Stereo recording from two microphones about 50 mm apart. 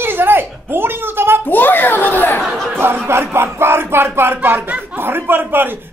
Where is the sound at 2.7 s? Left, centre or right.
Right.